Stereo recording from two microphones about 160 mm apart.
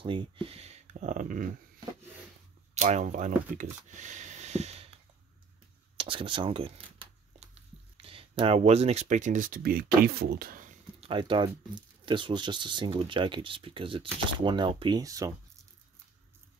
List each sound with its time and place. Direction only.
0.0 s speech: 30° right (ahead or behind); by 1.5 s 55° right (ahead or behind)
2.7 s speech: 45° right (ahead or behind)
5.9 s a sound: 35° right (ahead or behind)
8.0 s speech: 35° right (ahead or behind); by 10.7 s 65° right (ahead or behind)
11.0 s speech: 30° right (ahead or behind)